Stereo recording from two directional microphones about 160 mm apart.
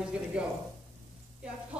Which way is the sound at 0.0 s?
5° right (ahead or behind).